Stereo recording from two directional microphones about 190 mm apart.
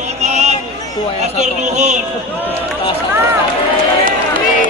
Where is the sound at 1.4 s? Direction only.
40° right (ahead or behind).